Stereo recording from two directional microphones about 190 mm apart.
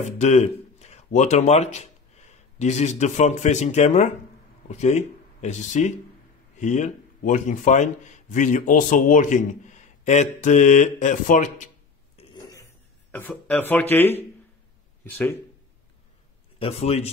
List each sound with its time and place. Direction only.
0.0 s speech: 35° left (ahead or behind)
12.4 s a sound: 20° left (ahead or behind)
13.1 s speech: 5° left (ahead or behind)
16.5 s speech: 30° left (ahead or behind)